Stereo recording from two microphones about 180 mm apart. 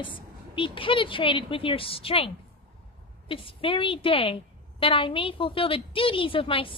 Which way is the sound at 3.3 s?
30° left (ahead or behind).